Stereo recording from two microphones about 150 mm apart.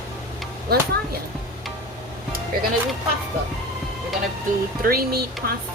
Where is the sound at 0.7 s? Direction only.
90° right.